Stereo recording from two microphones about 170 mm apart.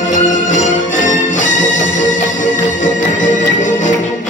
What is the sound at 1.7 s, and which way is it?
Music, 90° left.